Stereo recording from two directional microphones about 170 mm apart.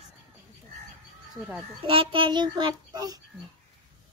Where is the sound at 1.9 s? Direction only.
30° right (ahead or behind).